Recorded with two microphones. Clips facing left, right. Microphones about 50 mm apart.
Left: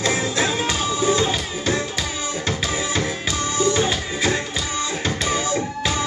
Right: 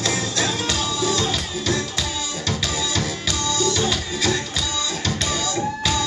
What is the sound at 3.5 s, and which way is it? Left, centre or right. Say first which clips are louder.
Music: left 3 dB; left.